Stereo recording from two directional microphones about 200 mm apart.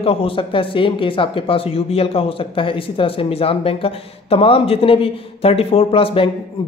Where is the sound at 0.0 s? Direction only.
30° left (ahead or behind).